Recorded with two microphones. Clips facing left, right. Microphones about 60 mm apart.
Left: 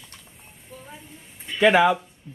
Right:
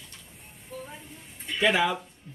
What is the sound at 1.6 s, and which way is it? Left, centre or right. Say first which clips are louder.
Speech: left 7 dB; left.